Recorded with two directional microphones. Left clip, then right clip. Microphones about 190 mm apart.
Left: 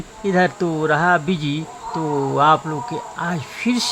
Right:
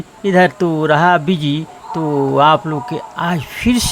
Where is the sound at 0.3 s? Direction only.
10° right (ahead or behind).